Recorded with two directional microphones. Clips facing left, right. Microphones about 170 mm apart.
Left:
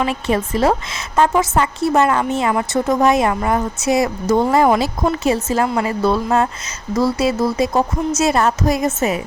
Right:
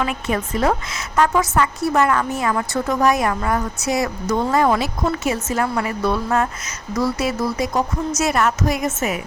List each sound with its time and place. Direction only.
0.0 s a woman's voice: 30° left (ahead or behind)